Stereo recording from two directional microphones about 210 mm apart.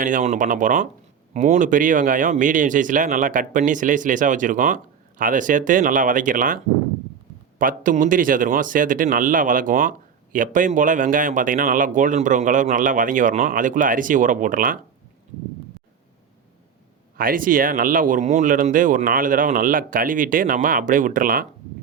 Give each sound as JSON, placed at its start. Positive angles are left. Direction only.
{"t": 0.0, "sound": "speech", "side_deg": -35}
{"t": 7.6, "sound": "speech", "side_deg": -40}
{"t": 17.2, "sound": "speech", "side_deg": -40}